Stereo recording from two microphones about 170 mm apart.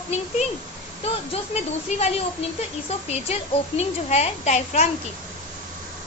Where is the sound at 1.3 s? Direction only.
40° left (ahead or behind).